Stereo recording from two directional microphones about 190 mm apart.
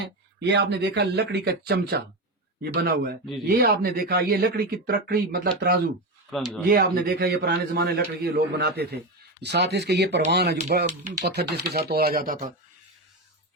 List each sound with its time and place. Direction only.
0.3 s a man's voice: 65° right (ahead or behind)
6.3 s speech: centre (ahead or behind)
6.7 s a man's voice: 50° right (ahead or behind)